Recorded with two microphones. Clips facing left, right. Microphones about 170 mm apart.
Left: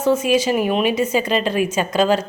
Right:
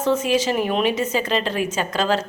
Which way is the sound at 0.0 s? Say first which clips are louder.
Left 3 dB; 10° left (ahead or behind).